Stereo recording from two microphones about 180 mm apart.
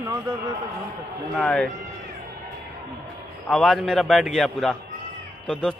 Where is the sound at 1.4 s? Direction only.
5° left (ahead or behind).